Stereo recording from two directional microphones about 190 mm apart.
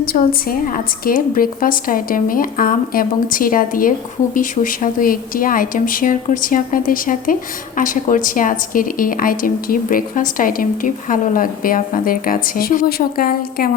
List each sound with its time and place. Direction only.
0.0 s a woman's voice: 50° left (ahead or behind)